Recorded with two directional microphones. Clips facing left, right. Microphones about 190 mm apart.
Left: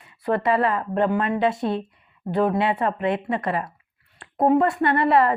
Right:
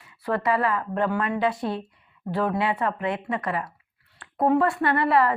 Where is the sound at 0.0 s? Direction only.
25° left (ahead or behind).